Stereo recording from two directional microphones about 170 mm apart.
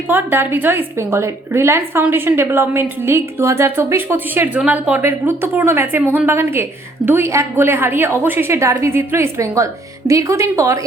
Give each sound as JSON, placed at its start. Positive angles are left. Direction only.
{"t": 0.1, "sound": "a woman's voice", "side_deg": -15}